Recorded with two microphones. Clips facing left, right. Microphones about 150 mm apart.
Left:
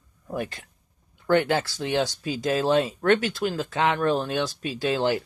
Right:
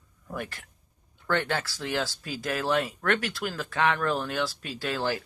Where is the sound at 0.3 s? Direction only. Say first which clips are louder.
Left 5 dB; 25° left (ahead or behind).